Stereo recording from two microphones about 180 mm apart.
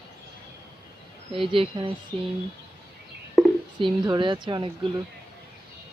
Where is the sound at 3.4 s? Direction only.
5° left (ahead or behind).